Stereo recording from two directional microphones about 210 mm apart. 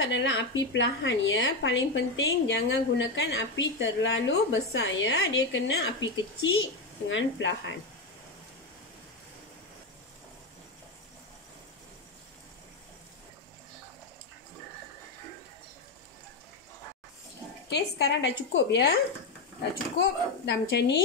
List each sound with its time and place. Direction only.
0.0 s a woman's voice: 60° left (ahead or behind)
17.6 s a woman's voice: 50° left (ahead or behind)
20.0 s a woman's voice: 55° left (ahead or behind)